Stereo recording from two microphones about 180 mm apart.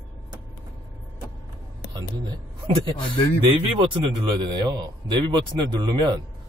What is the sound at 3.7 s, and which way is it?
Speech, 25° right (ahead or behind).